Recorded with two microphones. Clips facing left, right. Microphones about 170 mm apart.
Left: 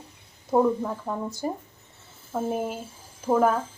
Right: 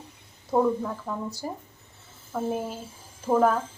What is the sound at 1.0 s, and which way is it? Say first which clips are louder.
Speech: left 3 dB; 20° left (ahead or behind).